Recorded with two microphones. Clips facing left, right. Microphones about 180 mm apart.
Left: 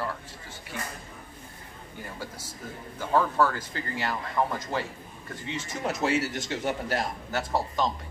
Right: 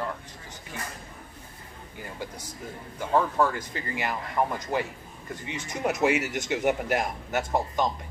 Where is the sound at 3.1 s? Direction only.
20° right (ahead or behind).